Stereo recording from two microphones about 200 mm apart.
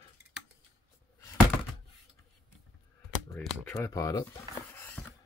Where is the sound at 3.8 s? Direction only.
15° left (ahead or behind).